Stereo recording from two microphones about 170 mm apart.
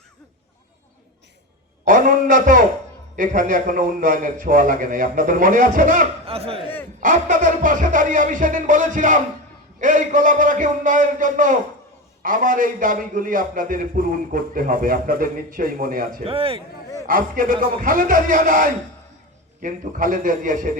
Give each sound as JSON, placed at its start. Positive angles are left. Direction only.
{"t": 1.8, "sound": "a sound", "side_deg": -55}
{"t": 3.2, "sound": "a man's voice", "side_deg": -55}
{"t": 6.2, "sound": "a man's voice", "side_deg": -35}
{"t": 7.0, "sound": "a man's voice", "side_deg": -50}
{"t": 16.2, "sound": "a man's voice", "side_deg": -35}
{"t": 17.1, "sound": "a man's voice", "side_deg": -55}